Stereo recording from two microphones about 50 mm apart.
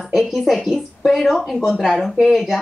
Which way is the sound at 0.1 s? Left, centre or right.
Centre.